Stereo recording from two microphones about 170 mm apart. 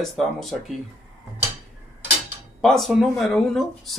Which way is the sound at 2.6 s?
Centre (ahead or behind).